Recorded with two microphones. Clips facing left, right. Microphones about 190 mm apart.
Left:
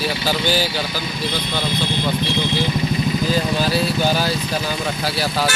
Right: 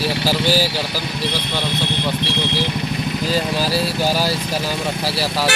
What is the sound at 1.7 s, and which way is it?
Vehicle, 65° right (ahead or behind).